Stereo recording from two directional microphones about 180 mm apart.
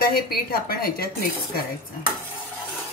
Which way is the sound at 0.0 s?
60° left (ahead or behind).